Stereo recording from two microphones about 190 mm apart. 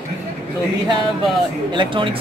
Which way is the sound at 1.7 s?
25° right (ahead or behind).